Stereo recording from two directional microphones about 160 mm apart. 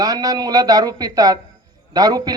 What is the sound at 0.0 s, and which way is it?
Speech, 25° right (ahead or behind).